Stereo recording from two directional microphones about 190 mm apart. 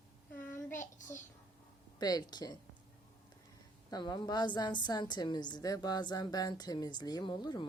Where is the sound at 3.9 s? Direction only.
20° left (ahead or behind).